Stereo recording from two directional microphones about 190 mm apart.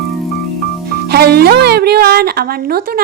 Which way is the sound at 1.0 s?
55° right (ahead or behind).